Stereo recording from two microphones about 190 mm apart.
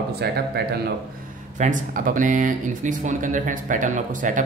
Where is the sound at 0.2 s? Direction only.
55° right (ahead or behind).